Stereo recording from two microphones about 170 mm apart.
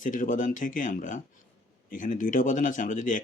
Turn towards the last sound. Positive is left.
turn(degrees=50)  # may be behind; listen again after turning